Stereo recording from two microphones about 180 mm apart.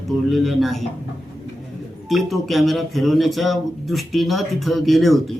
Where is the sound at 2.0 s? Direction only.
Centre (ahead or behind).